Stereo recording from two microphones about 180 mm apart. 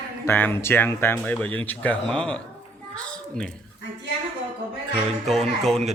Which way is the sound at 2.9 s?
5° left (ahead or behind).